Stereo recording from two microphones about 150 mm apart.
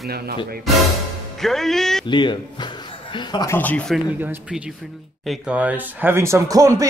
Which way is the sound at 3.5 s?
10° left (ahead or behind).